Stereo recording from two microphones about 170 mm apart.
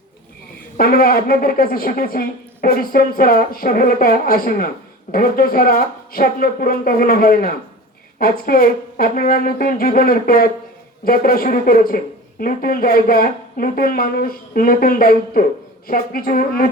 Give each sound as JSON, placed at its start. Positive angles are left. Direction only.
{"t": 0.8, "sound": "speech", "side_deg": 60}